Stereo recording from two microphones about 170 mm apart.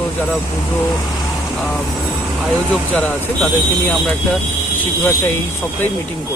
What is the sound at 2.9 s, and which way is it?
Speech, 10° left (ahead or behind).